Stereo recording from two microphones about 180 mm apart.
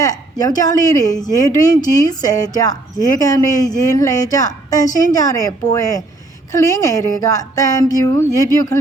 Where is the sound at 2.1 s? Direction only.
20° left (ahead or behind).